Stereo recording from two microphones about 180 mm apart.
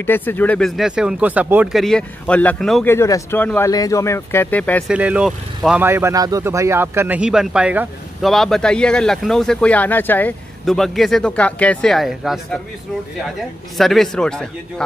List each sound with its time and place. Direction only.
0.0 s speech: 10° left (ahead or behind)
4.8 s speech: 5° right (ahead or behind)